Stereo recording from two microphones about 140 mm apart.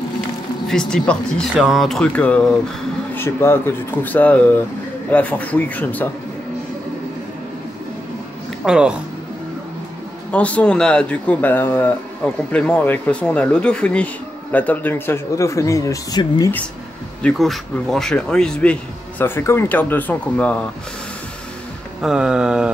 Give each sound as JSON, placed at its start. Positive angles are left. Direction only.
{"t": 0.7, "sound": "speech", "side_deg": 5}
{"t": 8.6, "sound": "speech", "side_deg": -5}
{"t": 10.3, "sound": "speech", "side_deg": 10}
{"t": 17.2, "sound": "speech", "side_deg": 5}
{"t": 22.0, "sound": "speech", "side_deg": -5}